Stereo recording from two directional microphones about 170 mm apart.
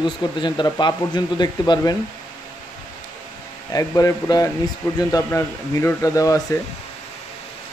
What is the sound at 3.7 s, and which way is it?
Speech, 20° left (ahead or behind).